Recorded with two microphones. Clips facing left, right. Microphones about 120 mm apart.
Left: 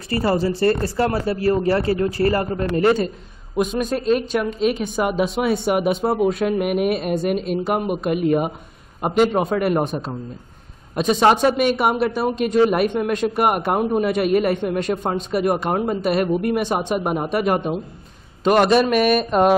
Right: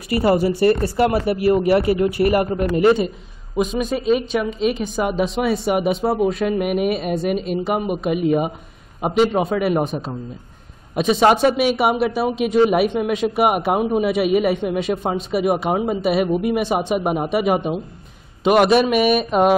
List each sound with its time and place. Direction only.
0.1 s a man's voice: 20° right (ahead or behind)
3.5 s speech: centre (ahead or behind)